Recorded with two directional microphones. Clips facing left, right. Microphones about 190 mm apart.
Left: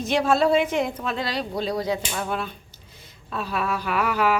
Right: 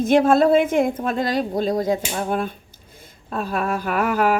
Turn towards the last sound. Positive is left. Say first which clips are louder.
# right 3 dB
turn(degrees=-50)  # may be behind; listen again after turning